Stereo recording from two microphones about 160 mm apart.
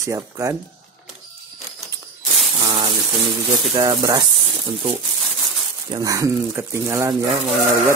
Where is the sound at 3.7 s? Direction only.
25° right (ahead or behind).